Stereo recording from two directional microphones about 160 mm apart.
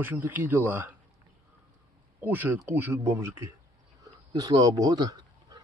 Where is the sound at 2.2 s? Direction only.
10° right (ahead or behind).